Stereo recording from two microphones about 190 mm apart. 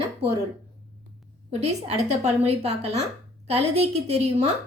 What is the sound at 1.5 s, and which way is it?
A woman's voice, 35° right (ahead or behind).